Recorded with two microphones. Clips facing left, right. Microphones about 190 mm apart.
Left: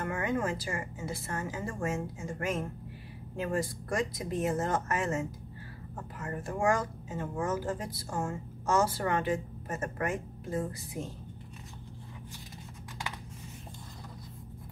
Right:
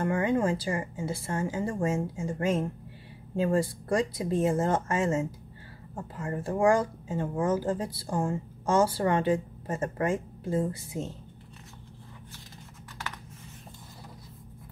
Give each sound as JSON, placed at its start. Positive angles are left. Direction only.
{"t": 0.0, "sound": "speech", "side_deg": -30}